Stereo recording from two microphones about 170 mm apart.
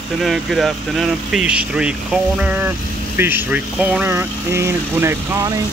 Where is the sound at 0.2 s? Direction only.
Centre (ahead or behind).